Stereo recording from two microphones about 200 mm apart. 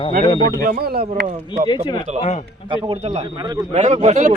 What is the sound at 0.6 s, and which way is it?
Speech, 50° right (ahead or behind).